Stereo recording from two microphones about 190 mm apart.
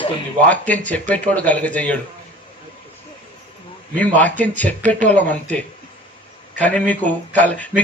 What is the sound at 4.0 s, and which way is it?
A man's voice, 10° left (ahead or behind).